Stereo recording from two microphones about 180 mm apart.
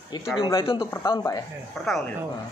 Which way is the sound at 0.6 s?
30° left (ahead or behind).